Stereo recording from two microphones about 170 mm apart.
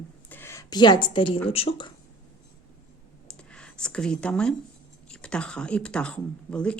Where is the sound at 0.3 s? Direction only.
15° left (ahead or behind); by 1.4 s 30° left (ahead or behind).